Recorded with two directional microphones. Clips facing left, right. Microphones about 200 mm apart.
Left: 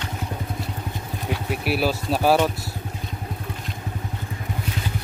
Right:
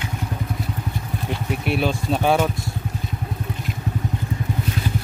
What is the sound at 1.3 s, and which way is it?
Speech, 5° left (ahead or behind).